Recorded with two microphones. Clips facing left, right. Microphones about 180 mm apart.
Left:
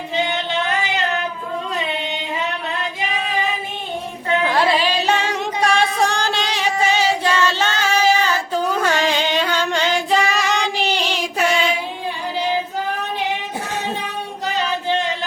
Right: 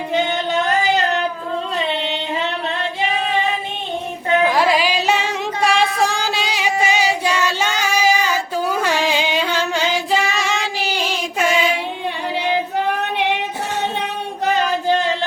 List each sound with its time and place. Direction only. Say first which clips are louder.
0.1 s singing: right 2 dB; 45° right (ahead or behind)
4.4 s music: right 2 dB; 10° right (ahead or behind)
14.4 s a sound: right 5 dB; 50° right (ahead or behind)